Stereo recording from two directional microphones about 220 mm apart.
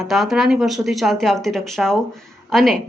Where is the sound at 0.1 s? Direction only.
Centre (ahead or behind).